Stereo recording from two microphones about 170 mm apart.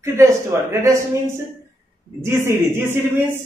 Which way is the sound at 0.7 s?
15° right (ahead or behind).